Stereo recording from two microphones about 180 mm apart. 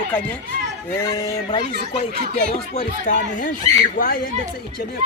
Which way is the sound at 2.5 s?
40° left (ahead or behind).